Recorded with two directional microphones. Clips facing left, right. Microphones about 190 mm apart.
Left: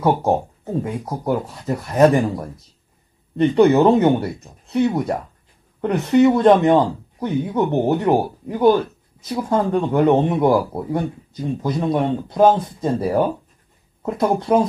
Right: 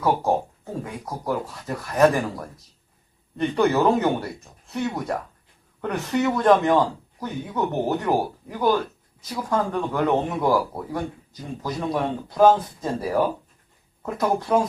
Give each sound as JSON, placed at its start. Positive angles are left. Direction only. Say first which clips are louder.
{"t": 0.0, "sound": "speech", "louder": "left 4 dB", "side_deg": 20}